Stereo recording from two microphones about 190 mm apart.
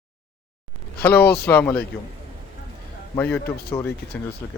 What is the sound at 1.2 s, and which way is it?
Speech, 60° left (ahead or behind).